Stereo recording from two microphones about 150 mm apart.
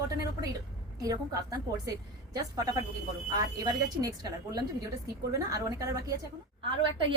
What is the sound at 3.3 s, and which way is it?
Speech, 25° right (ahead or behind).